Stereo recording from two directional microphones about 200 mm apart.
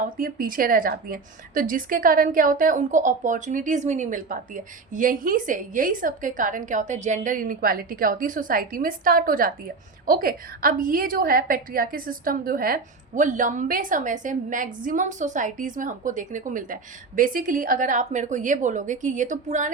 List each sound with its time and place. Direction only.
0.2 s a woman's voice: 45° right (ahead or behind)